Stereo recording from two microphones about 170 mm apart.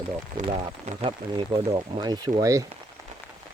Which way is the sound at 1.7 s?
25° right (ahead or behind).